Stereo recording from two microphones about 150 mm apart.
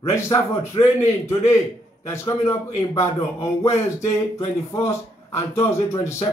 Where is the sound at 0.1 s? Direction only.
20° left (ahead or behind).